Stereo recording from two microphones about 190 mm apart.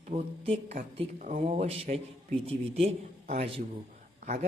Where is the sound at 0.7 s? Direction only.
45° right (ahead or behind).